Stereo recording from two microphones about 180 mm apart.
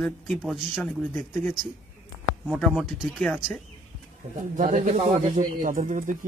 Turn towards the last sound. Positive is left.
turn(degrees=-45)  # may be behind; listen again after turning